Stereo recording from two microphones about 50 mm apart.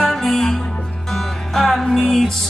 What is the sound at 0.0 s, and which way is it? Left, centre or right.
Music, centre.